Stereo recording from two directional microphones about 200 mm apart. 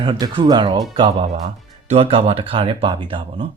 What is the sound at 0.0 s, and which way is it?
Speech, 25° right (ahead or behind).